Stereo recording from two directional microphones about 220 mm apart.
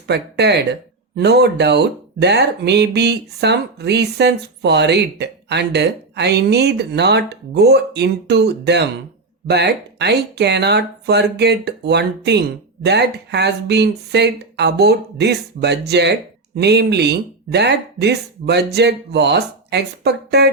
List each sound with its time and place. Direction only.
0.1 s speech: 50° right (ahead or behind)